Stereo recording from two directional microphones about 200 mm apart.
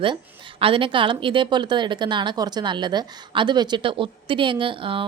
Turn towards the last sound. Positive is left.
turn(degrees=-25)  # may be behind; listen again after turning